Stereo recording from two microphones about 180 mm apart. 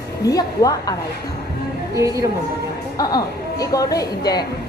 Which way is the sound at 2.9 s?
20° left (ahead or behind).